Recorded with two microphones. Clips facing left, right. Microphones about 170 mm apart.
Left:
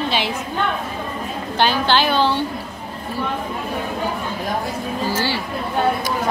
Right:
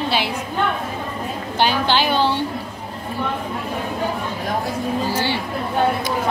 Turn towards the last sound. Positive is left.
turn(degrees=-20)  # may be behind; listen again after turning